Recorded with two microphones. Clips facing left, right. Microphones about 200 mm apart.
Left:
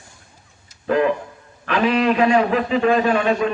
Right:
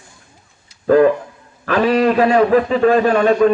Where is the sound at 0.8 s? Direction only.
40° right (ahead or behind).